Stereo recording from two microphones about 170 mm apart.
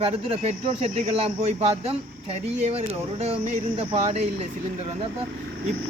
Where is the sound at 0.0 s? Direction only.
35° right (ahead or behind).